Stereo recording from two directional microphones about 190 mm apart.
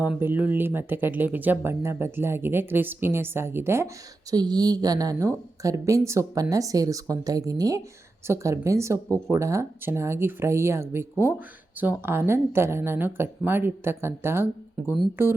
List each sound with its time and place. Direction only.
0.0 s speech: 10° right (ahead or behind)